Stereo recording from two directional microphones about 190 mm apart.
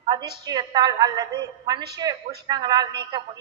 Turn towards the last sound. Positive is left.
turn(degrees=-20)  # may be behind; listen again after turning